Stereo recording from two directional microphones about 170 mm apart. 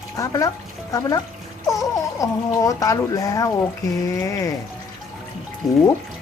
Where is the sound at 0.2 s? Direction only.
20° left (ahead or behind).